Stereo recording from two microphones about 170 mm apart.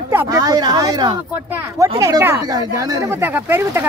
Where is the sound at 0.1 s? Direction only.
15° right (ahead or behind).